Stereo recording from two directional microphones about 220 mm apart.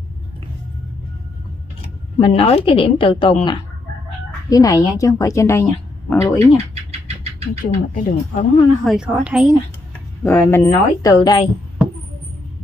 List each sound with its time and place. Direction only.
2.1 s a woman's voice: 25° left (ahead or behind)
6.7 s rodents: 30° right (ahead or behind)
7.6 s speech: 35° left (ahead or behind)
8.8 s a woman's voice: 5° right (ahead or behind)
10.2 s a woman's voice: 10° left (ahead or behind)